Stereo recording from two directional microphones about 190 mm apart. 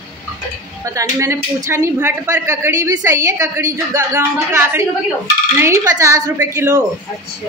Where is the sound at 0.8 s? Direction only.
15° right (ahead or behind).